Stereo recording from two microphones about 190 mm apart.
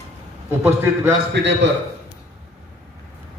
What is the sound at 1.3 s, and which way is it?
Speech, 65° right (ahead or behind).